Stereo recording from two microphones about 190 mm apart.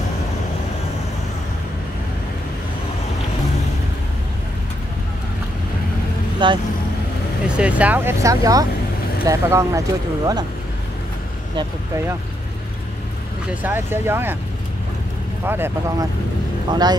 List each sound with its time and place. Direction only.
6.4 s speech: 25° right (ahead or behind)
7.4 s speech: 5° right (ahead or behind)
13.6 s speech: 10° right (ahead or behind)
15.4 s speech: 10° right (ahead or behind)